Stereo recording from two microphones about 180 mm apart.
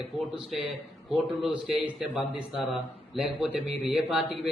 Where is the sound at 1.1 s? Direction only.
Centre (ahead or behind).